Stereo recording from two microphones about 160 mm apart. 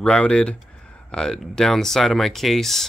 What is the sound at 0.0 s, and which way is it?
Speech, 5° left (ahead or behind).